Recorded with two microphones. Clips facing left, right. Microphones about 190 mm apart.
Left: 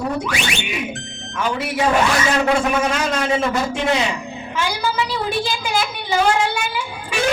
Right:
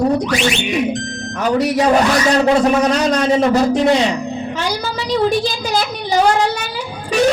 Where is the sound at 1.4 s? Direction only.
40° right (ahead or behind).